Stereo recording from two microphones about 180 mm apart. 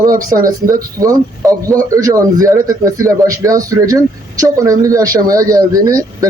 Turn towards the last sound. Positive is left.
turn(degrees=-20)  # may be behind; listen again after turning